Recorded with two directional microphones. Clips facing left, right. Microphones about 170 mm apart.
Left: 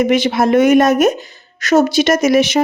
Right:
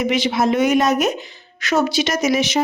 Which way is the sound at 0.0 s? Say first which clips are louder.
Left 5 dB; 50° left (ahead or behind).